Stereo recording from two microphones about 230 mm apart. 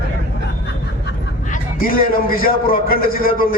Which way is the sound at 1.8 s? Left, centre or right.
Left.